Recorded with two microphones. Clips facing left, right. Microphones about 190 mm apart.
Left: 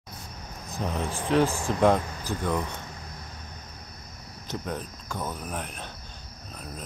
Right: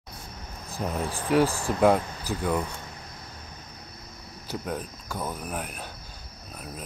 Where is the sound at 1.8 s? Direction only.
5° right (ahead or behind).